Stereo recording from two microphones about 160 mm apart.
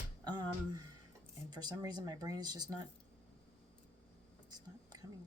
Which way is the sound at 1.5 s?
25° right (ahead or behind).